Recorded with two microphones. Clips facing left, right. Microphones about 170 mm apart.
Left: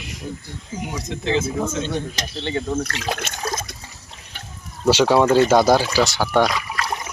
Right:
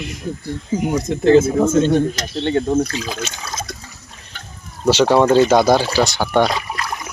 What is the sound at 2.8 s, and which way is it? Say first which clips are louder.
Speech: right 2 dB; 65° left (ahead or behind).